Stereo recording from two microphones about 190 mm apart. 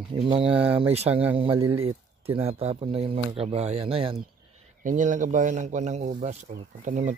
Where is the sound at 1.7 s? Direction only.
30° right (ahead or behind).